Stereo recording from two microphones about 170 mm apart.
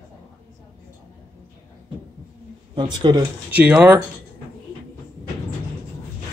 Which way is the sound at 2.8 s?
30° right (ahead or behind).